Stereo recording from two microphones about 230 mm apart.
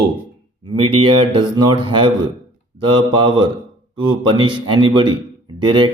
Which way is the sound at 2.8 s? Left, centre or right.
Centre.